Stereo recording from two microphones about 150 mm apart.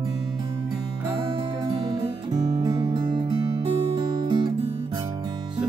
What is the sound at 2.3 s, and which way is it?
Music, 30° right (ahead or behind).